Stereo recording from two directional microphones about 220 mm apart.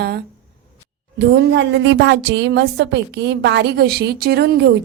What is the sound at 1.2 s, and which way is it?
A woman's voice, 55° right (ahead or behind).